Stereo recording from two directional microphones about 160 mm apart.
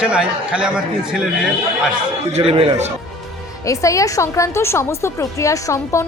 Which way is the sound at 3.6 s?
20° left (ahead or behind).